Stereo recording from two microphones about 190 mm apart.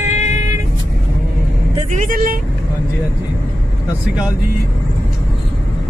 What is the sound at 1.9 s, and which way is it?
Speech, 45° right (ahead or behind).